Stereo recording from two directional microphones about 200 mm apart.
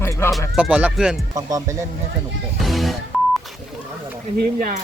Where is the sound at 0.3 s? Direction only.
Centre (ahead or behind).